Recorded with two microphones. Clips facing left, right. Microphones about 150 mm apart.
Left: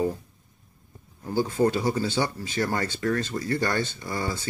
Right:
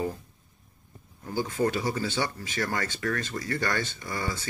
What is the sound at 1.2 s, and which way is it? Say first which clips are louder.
Speech: left 4 dB; 30° left (ahead or behind).